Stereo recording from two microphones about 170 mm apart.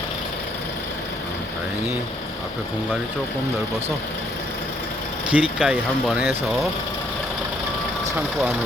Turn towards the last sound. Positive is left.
turn(degrees=0)  # may be behind; listen again after turning